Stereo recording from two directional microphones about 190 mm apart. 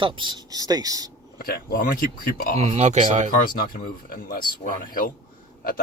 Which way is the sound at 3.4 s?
50° left (ahead or behind).